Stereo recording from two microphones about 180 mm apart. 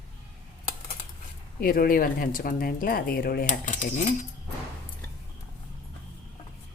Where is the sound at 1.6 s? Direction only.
55° left (ahead or behind).